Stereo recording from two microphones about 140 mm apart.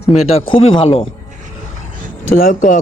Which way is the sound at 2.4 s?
70° left (ahead or behind).